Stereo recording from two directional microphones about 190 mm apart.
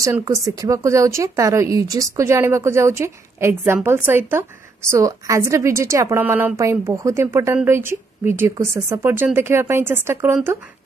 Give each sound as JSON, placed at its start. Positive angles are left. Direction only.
{"t": 0.0, "sound": "speech", "side_deg": -15}